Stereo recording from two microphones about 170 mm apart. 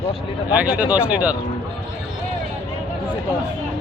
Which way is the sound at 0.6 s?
10° right (ahead or behind).